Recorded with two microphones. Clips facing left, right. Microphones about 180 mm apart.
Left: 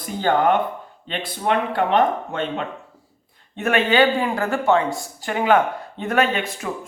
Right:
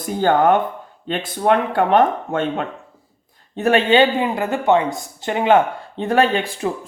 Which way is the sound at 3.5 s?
35° right (ahead or behind).